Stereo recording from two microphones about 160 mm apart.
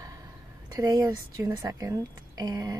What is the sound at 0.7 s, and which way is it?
A woman's voice, 20° right (ahead or behind).